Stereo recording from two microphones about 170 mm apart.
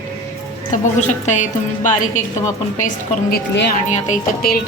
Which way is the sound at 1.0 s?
45° left (ahead or behind).